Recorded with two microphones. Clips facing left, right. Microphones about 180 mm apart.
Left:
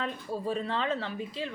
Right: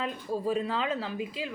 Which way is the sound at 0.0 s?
5° right (ahead or behind).